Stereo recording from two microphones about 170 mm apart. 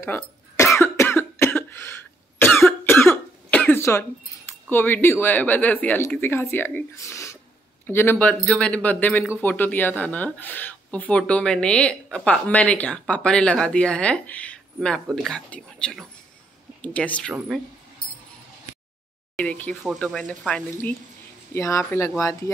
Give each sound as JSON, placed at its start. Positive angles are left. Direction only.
{"t": 0.0, "sound": "cough", "side_deg": 15}
{"t": 4.6, "sound": "speech", "side_deg": 10}
{"t": 19.3, "sound": "speech", "side_deg": 5}
{"t": 21.5, "sound": "speech", "side_deg": 15}